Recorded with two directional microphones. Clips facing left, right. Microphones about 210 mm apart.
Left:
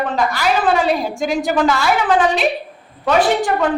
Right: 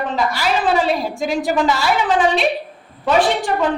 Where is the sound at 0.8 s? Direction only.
Centre (ahead or behind).